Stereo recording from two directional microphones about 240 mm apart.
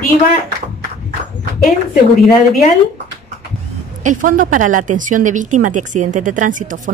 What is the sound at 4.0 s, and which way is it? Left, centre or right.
A woman's voice, right.